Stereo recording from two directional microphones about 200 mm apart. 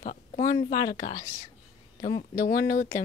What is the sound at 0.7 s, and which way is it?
Speech, 20° left (ahead or behind).